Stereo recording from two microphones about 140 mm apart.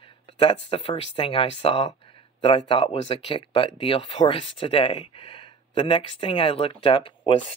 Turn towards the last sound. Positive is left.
turn(degrees=40)  # may be behind; listen again after turning